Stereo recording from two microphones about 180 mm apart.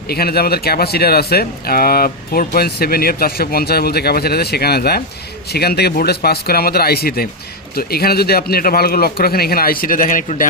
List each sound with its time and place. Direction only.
0.1 s speech: 60° left (ahead or behind)